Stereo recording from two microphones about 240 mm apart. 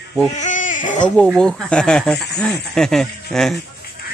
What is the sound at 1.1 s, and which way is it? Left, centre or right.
Speech, centre.